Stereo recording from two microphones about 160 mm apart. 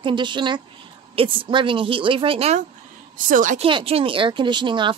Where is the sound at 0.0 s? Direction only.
30° right (ahead or behind).